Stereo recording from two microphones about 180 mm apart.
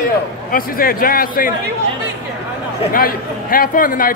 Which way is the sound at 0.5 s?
55° left (ahead or behind).